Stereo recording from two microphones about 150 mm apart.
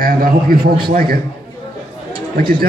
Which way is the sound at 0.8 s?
90° right.